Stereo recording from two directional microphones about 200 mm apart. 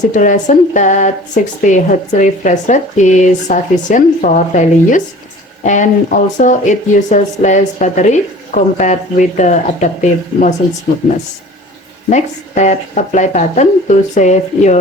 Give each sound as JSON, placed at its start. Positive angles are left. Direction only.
{"t": 0.1, "sound": "speech", "side_deg": 40}
{"t": 12.1, "sound": "speech", "side_deg": 35}